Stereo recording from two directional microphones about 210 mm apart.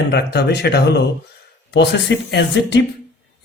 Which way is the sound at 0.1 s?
50° left (ahead or behind).